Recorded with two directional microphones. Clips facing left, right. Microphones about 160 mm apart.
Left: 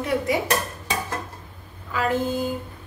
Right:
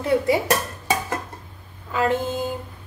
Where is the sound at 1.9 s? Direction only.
25° right (ahead or behind).